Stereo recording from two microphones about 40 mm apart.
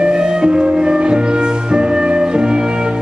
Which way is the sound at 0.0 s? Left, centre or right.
Right.